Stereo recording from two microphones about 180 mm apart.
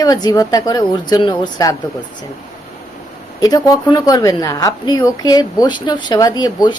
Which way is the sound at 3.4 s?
20° left (ahead or behind).